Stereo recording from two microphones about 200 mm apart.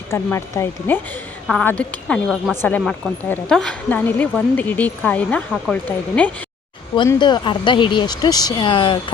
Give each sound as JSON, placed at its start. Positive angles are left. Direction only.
{"t": 0.1, "sound": "a woman's voice", "side_deg": 15}
{"t": 6.9, "sound": "speech", "side_deg": 25}